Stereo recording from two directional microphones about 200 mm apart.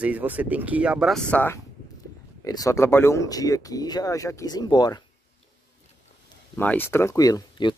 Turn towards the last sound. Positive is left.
turn(degrees=20)  # may be behind; listen again after turning